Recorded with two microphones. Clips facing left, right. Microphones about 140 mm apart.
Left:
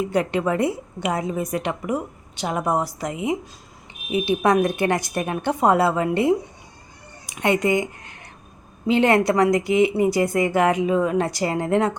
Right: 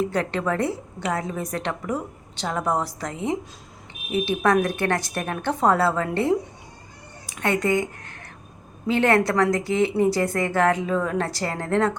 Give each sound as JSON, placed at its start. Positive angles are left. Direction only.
{"t": 0.0, "sound": "a woman's voice", "side_deg": 15}